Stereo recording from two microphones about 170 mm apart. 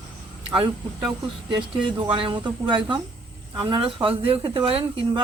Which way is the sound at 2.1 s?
30° right (ahead or behind).